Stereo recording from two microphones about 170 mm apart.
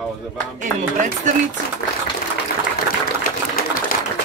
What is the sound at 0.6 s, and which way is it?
Speech, 45° right (ahead or behind).